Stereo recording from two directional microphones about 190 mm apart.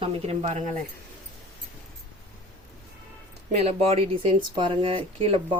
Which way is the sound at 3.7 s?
30° right (ahead or behind).